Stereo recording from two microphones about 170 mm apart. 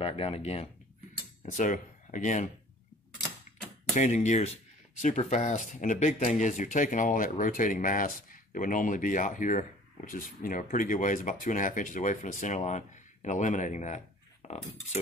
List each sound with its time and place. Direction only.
0.0 s speech: 35° left (ahead or behind)
3.9 s speech: 45° left (ahead or behind)
14.4 s cutlery: 45° left (ahead or behind)